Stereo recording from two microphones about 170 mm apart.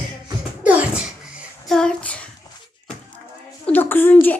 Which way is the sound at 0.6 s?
5° right (ahead or behind).